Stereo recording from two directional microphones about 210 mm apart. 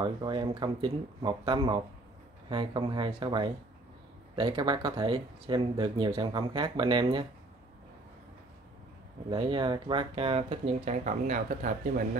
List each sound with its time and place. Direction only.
0.0 s speech: 20° right (ahead or behind)
9.3 s speech: 25° right (ahead or behind)